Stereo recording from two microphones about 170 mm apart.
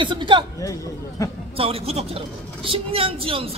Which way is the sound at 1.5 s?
35° right (ahead or behind).